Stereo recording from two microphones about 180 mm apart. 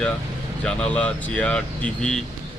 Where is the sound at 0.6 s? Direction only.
5° left (ahead or behind).